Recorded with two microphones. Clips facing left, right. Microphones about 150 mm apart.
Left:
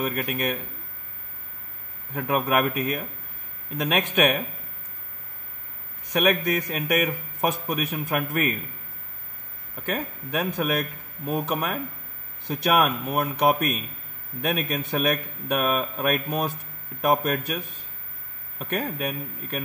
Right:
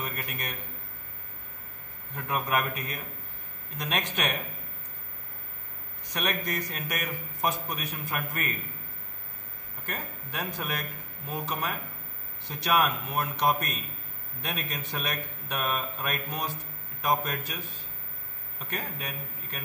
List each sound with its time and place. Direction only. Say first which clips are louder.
0.0 s a man's voice: left 10 dB; 85° left
2.1 s a man's voice: left 6 dB; 60° left (ahead or behind)
3.7 s a man's voice: left 8 dB; 80° left
6.1 s a man's voice: left 9 dB; 70° left (ahead or behind)
9.8 s a man's voice: left 9 dB; 70° left (ahead or behind)
12.4 s a man's voice: left 5 dB; 55° left (ahead or behind)
18.6 s a man's voice: left 9 dB; 70° left (ahead or behind)